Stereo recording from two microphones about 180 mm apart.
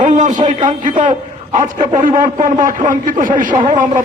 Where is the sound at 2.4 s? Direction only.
45° right (ahead or behind).